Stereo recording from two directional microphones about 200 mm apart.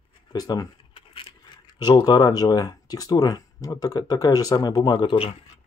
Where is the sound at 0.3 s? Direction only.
20° left (ahead or behind).